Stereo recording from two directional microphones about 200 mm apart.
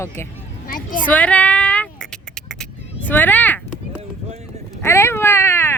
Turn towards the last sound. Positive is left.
turn(degrees=10)  # may be behind; listen again after turning